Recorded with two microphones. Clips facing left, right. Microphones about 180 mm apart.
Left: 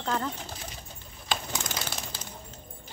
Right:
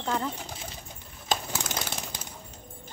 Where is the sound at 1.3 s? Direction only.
40° right (ahead or behind).